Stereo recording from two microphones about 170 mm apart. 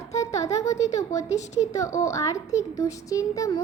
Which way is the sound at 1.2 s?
40° left (ahead or behind).